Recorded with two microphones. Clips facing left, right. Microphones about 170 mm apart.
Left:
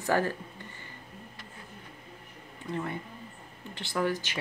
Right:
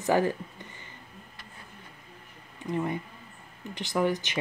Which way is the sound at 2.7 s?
15° right (ahead or behind).